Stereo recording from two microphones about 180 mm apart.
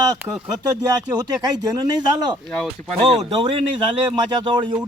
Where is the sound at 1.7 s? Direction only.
20° right (ahead or behind).